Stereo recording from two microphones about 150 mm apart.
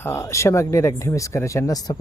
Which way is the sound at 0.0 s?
20° left (ahead or behind).